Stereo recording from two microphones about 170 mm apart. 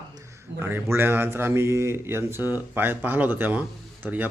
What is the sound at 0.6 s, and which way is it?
A man's voice, 15° right (ahead or behind).